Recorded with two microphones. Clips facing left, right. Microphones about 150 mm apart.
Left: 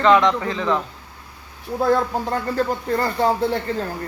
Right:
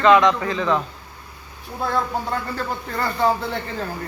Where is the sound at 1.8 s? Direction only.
40° left (ahead or behind).